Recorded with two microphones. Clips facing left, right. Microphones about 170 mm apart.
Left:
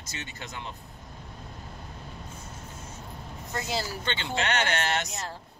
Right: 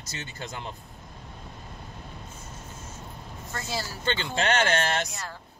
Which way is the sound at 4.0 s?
40° right (ahead or behind).